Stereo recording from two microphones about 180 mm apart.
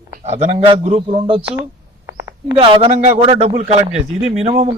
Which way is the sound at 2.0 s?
15° right (ahead or behind).